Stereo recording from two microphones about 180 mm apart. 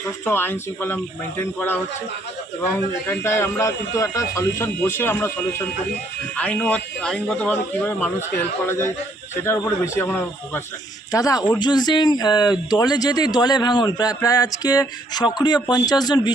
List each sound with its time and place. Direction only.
0.3 s a man's voice: 10° left (ahead or behind)